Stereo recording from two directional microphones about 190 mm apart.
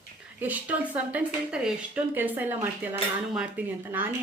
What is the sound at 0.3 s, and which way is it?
A woman's voice, 10° right (ahead or behind).